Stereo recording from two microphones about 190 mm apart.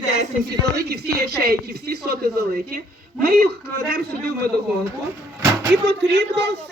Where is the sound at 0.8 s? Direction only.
55° right (ahead or behind).